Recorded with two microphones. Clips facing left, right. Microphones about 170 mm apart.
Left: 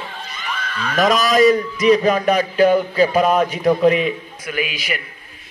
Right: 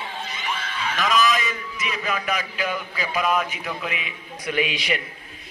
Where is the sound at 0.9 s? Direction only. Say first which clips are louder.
Left 6 dB; 40° left (ahead or behind).